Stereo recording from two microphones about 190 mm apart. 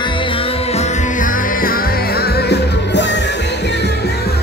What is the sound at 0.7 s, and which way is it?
Music, 40° left (ahead or behind).